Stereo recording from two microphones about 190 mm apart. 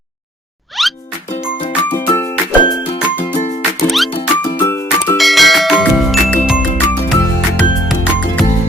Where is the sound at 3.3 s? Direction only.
35° left (ahead or behind).